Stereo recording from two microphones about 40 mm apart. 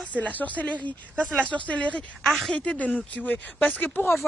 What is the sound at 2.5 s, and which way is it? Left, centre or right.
Speech, left.